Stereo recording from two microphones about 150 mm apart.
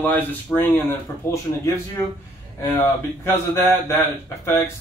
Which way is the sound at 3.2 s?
20° left (ahead or behind).